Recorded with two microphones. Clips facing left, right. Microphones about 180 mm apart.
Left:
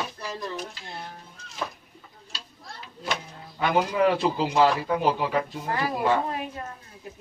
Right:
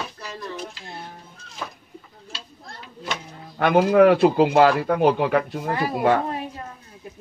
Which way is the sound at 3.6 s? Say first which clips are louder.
Right 7 dB; 60° right (ahead or behind).